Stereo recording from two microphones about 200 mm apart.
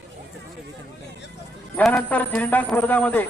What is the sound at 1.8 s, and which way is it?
A man's voice, 5° left (ahead or behind).